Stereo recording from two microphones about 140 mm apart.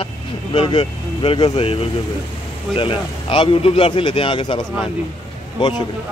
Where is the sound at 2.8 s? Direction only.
40° left (ahead or behind).